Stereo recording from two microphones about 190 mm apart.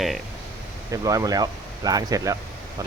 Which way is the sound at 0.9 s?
15° right (ahead or behind).